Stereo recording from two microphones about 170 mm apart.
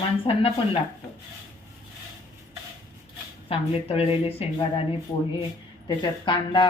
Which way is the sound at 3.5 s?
35° left (ahead or behind).